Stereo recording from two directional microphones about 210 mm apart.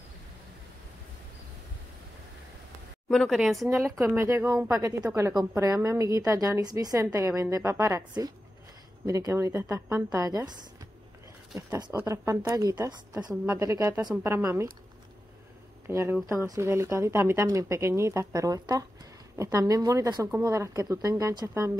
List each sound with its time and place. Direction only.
3.1 s speech: centre (ahead or behind)
3.9 s a woman's voice: 10° right (ahead or behind)
11.5 s a woman's voice: 10° right (ahead or behind)
15.9 s a woman's voice: 15° right (ahead or behind)